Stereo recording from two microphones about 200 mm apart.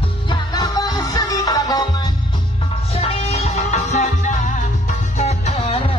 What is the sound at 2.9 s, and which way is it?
Music, 30° left (ahead or behind).